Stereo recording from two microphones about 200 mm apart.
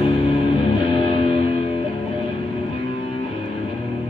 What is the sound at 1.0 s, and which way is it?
Music, 30° left (ahead or behind).